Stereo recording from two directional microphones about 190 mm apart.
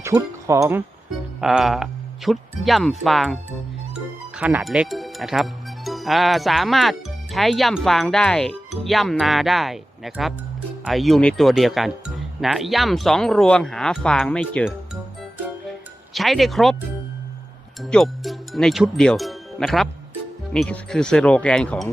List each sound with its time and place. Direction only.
0.0 s speech: 15° right (ahead or behind)
1.4 s speech: 5° right (ahead or behind)
4.4 s speech: 5° right (ahead or behind)
16.1 s speech: centre (ahead or behind)
17.7 s speech: centre (ahead or behind)